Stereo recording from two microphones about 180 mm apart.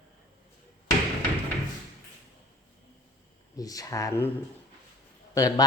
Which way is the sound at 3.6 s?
20° left (ahead or behind).